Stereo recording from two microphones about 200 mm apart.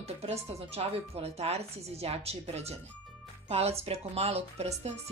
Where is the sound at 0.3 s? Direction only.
30° right (ahead or behind).